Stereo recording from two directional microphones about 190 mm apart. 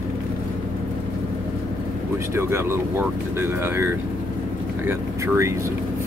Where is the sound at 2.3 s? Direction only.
15° right (ahead or behind).